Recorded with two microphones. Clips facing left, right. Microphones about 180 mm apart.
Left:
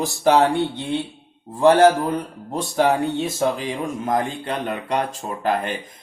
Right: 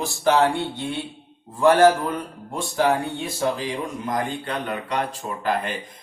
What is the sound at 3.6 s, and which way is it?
Speech, 50° left (ahead or behind).